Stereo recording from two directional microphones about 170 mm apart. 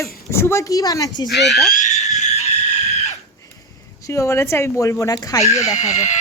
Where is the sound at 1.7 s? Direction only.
45° left (ahead or behind).